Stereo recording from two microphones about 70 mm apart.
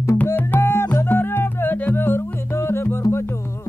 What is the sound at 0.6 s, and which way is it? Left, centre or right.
Music, left.